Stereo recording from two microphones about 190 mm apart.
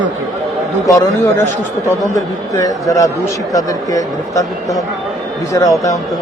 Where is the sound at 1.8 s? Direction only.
15° left (ahead or behind).